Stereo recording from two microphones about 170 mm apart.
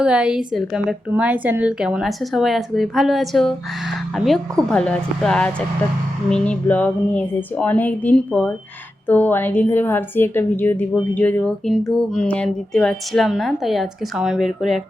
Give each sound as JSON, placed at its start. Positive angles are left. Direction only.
{"t": 0.0, "sound": "a woman's voice", "side_deg": -5}